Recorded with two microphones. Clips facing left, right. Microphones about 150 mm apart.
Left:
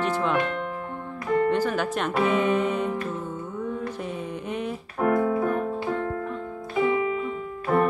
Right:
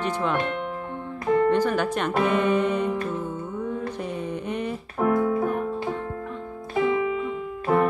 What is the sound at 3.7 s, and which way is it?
Mantra, centre (ahead or behind).